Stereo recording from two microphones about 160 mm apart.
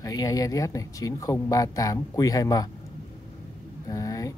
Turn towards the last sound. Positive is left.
turn(degrees=20)  # may be behind; listen again after turning